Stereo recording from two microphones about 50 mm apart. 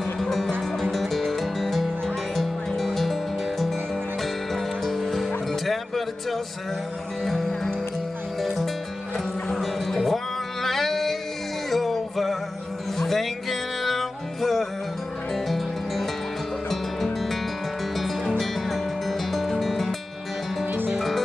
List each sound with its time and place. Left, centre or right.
0.2 s music: centre
4.8 s music: centre
7.2 s music: centre
9.5 s music: centre
18.4 s music: centre
20.7 s music: right